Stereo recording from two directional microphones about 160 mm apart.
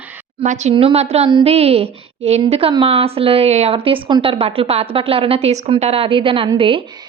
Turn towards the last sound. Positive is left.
turn(degrees=-35)  # may be behind; listen again after turning